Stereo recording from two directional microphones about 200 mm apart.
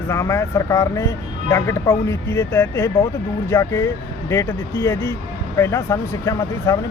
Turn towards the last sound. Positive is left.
turn(degrees=15)  # may be behind; listen again after turning